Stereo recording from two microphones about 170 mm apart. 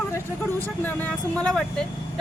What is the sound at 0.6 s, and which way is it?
Speech, 10° left (ahead or behind).